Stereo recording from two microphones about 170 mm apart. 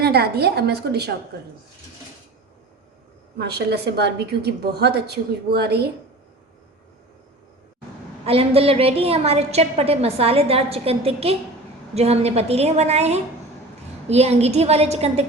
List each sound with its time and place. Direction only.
0.0 s a woman's voice: 70° right (ahead or behind)
3.3 s a woman's voice: 70° right (ahead or behind)
8.2 s a woman's voice: 35° right (ahead or behind)